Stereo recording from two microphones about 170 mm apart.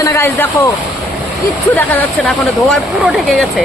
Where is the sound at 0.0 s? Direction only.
15° left (ahead or behind).